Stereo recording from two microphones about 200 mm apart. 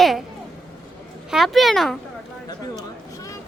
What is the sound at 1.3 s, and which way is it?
Speech, centre (ahead or behind).